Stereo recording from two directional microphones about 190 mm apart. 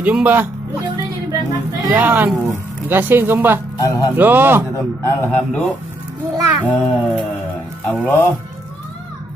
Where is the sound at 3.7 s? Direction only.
20° left (ahead or behind).